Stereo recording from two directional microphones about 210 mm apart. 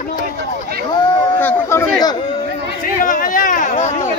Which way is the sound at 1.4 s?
15° left (ahead or behind).